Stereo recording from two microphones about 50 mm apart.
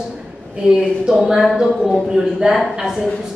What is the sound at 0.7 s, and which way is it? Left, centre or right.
A woman's voice, centre.